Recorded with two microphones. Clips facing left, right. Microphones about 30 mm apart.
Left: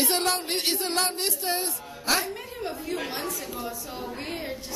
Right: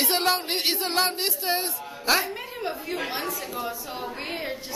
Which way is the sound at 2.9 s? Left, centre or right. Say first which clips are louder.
Even; centre.